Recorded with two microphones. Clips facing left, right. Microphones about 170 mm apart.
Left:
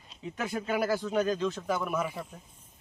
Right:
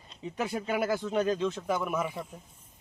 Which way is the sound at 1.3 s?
20° right (ahead or behind).